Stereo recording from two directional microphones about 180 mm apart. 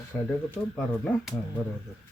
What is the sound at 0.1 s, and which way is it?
Speech, 10° left (ahead or behind).